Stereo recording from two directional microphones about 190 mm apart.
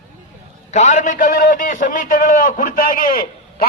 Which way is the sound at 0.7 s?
40° left (ahead or behind).